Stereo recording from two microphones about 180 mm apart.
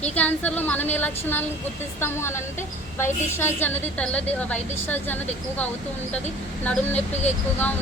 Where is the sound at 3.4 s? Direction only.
10° left (ahead or behind).